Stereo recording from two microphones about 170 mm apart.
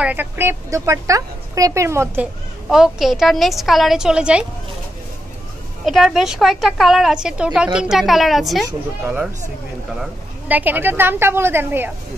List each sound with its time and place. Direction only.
0.0 s speech: 10° right (ahead or behind)
2.7 s speech: centre (ahead or behind)
5.9 s speech: centre (ahead or behind)
10.5 s speech: 10° right (ahead or behind)